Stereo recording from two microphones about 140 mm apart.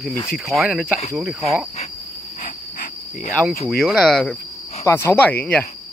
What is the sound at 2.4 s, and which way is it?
Cricket, 75° left (ahead or behind).